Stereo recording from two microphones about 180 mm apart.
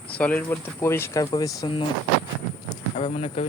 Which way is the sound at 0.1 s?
10° left (ahead or behind).